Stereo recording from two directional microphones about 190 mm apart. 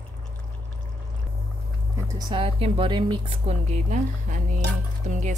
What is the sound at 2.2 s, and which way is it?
Speech, 25° right (ahead or behind).